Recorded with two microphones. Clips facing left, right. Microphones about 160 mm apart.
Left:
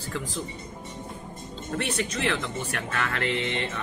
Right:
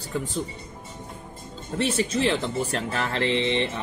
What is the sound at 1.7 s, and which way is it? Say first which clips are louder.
Speech: right 5 dB; 25° right (ahead or behind).